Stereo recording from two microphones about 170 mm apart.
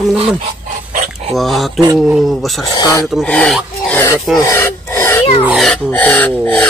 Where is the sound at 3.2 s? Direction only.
5° left (ahead or behind).